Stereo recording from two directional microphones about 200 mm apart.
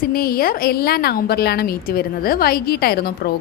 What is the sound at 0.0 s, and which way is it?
A woman's voice, 50° left (ahead or behind).